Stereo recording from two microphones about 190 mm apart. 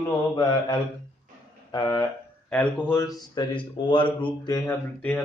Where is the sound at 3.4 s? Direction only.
25° left (ahead or behind).